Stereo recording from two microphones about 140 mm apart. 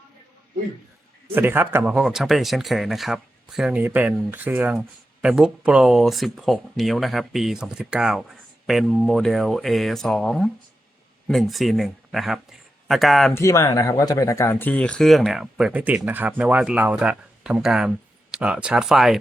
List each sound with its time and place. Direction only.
1.4 s speech: 15° right (ahead or behind); by 13.3 s centre (ahead or behind)
13.3 s speech: 20° left (ahead or behind)
14.7 s speech: 10° left (ahead or behind)